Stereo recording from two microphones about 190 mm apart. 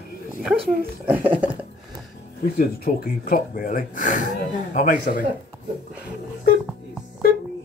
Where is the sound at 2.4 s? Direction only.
55° left (ahead or behind).